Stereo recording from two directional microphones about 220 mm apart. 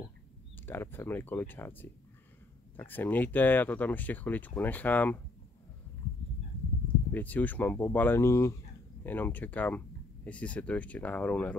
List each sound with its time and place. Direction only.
0.7 s speech: 10° left (ahead or behind)
7.1 s speech: 10° left (ahead or behind)